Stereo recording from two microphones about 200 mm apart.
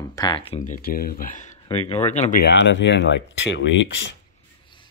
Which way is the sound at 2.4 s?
60° left (ahead or behind).